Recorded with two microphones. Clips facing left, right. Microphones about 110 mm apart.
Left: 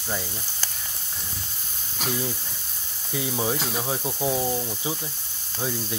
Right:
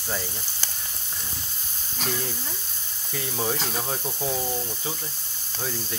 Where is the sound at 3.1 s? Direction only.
10° left (ahead or behind).